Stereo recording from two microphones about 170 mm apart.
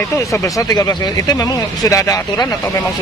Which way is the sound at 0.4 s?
20° left (ahead or behind).